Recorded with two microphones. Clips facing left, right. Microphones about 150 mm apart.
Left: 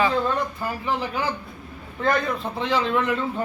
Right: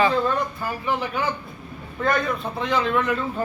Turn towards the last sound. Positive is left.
turn(degrees=25)  # may be behind; listen again after turning